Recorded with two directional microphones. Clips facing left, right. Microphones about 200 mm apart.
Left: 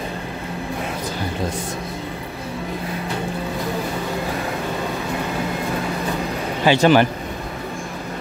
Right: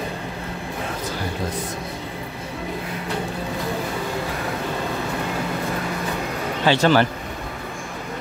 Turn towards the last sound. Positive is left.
turn(degrees=15)  # may be behind; listen again after turning